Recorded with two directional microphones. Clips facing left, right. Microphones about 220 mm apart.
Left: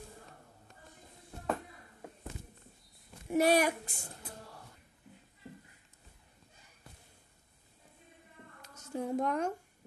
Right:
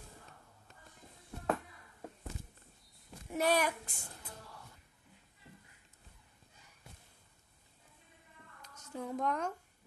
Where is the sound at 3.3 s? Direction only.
10° left (ahead or behind).